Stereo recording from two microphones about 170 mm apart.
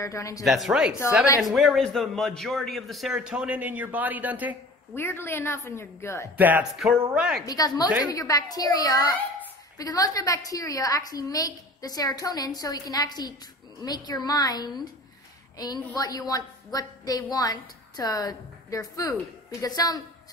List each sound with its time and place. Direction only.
0.0 s a woman's voice: 20° left (ahead or behind)
0.4 s a man's voice: centre (ahead or behind)
4.9 s a woman's voice: 15° left (ahead or behind)
6.3 s a man's voice: 10° right (ahead or behind)
7.4 s a woman's voice: 20° left (ahead or behind)